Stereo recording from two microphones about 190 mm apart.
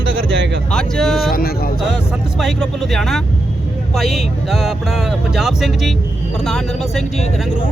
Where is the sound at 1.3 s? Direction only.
50° left (ahead or behind).